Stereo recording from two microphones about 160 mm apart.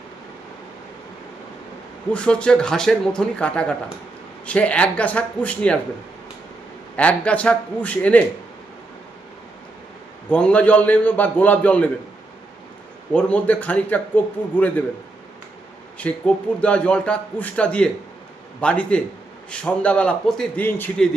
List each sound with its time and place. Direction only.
2.1 s a man's voice: 5° left (ahead or behind)
6.9 s a man's voice: 10° left (ahead or behind)
10.2 s a man's voice: 10° left (ahead or behind)
13.1 s a man's voice: 10° left (ahead or behind)
16.0 s a man's voice: 10° left (ahead or behind)